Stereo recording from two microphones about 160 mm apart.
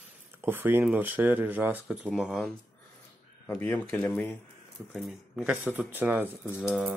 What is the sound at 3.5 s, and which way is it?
Speech, 10° left (ahead or behind).